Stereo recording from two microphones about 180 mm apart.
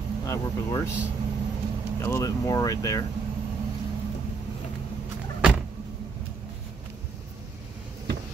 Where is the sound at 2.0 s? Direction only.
15° left (ahead or behind).